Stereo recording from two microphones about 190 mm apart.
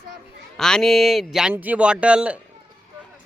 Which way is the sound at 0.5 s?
5° left (ahead or behind).